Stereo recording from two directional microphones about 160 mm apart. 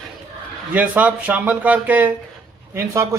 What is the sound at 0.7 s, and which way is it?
Speech, 10° right (ahead or behind).